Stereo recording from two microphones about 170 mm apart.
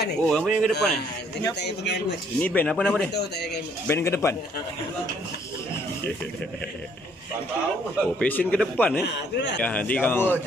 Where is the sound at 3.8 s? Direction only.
15° left (ahead or behind).